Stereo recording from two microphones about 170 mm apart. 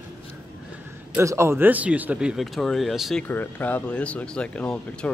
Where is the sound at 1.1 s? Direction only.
15° right (ahead or behind); by 3.2 s centre (ahead or behind).